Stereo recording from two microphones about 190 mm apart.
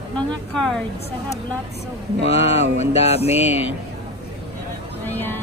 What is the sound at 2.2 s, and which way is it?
Mantra, 35° left (ahead or behind).